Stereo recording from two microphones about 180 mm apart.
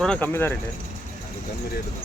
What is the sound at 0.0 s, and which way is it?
Speech, 5° left (ahead or behind).